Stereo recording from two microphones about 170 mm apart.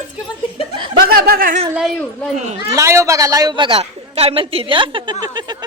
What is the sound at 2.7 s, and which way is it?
A man's voice, 15° right (ahead or behind).